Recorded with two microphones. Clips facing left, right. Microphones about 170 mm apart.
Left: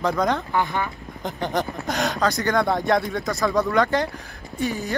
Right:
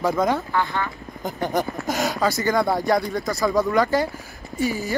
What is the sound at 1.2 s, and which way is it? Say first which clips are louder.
Speech: right 1 dB; 5° right (ahead or behind).